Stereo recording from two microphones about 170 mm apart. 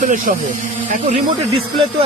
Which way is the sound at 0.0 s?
50° right (ahead or behind).